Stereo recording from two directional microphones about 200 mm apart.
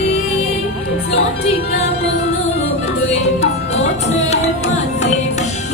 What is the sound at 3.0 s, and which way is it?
Music, 30° left (ahead or behind).